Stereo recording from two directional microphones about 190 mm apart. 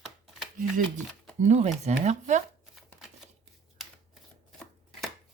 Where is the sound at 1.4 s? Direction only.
35° right (ahead or behind).